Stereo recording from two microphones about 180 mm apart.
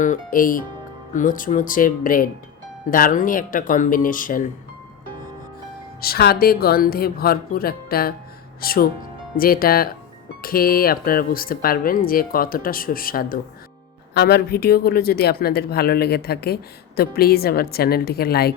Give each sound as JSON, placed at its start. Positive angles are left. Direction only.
{"t": 0.0, "sound": "speech", "side_deg": 45}
{"t": 6.0, "sound": "speech", "side_deg": 60}